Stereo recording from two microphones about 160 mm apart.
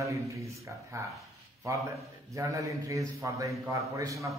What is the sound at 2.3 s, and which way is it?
A man's voice, 20° right (ahead or behind).